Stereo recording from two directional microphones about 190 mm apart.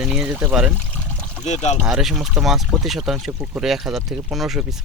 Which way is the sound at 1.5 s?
35° left (ahead or behind).